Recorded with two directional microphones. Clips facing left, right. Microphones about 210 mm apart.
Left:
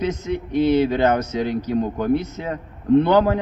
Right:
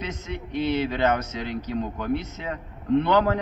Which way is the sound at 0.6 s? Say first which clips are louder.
Left 7 dB; 40° left (ahead or behind).